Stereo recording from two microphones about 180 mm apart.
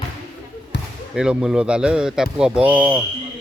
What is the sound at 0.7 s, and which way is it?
Basketball bounce, 75° left (ahead or behind).